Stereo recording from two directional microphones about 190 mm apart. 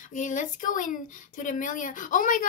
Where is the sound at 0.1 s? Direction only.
40° left (ahead or behind).